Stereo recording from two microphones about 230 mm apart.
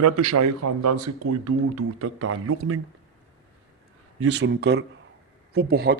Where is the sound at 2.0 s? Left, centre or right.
Right.